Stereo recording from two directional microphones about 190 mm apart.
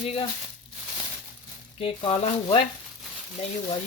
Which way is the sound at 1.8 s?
25° left (ahead or behind).